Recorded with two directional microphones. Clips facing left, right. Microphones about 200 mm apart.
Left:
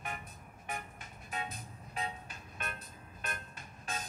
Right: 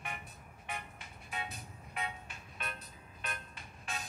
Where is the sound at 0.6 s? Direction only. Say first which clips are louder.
Left 2 dB; 45° left (ahead or behind).